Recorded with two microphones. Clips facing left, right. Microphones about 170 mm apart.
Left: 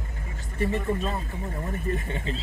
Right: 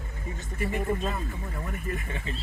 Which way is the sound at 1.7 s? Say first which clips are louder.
Left 5 dB; 30° left (ahead or behind).